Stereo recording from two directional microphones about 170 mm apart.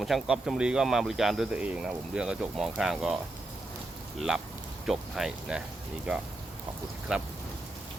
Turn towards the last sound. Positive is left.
turn(degrees=-5)  # may be behind; listen again after turning